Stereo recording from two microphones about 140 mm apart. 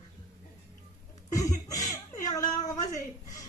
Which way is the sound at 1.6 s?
25° left (ahead or behind).